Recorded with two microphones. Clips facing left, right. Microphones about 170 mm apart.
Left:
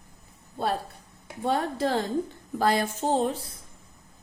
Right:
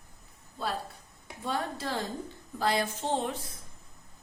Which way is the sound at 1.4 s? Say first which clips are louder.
Left 7 dB; 60° left (ahead or behind).